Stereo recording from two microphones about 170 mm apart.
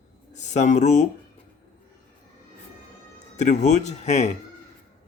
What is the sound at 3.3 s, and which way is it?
Speech, 45° left (ahead or behind).